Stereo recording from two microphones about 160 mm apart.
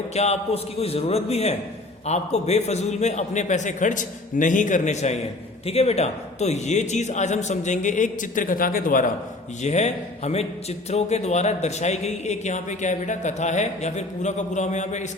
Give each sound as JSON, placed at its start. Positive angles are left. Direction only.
{"t": 0.1, "sound": "a man's voice", "side_deg": 40}
{"t": 9.6, "sound": "a man's voice", "side_deg": 45}